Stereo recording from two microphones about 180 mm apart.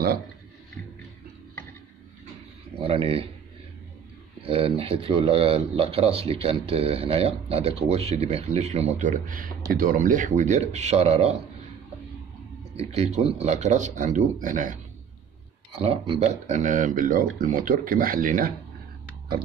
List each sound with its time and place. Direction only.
2.8 s speech: 30° right (ahead or behind)
4.4 s speech: 30° right (ahead or behind)
12.7 s speech: 35° right (ahead or behind)
15.7 s speech: 30° right (ahead or behind); by 18.5 s 50° right (ahead or behind)